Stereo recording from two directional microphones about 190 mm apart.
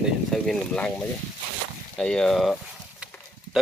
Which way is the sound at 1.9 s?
5° left (ahead or behind).